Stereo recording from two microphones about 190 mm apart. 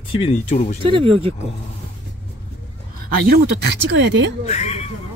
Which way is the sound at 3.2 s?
60° right (ahead or behind).